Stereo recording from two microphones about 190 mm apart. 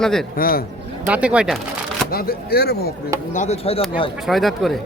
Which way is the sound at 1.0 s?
5° right (ahead or behind).